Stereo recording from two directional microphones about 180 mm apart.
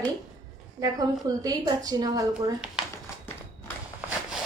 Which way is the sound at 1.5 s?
20° right (ahead or behind).